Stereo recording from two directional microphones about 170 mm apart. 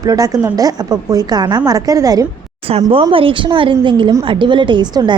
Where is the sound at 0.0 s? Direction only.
20° right (ahead or behind).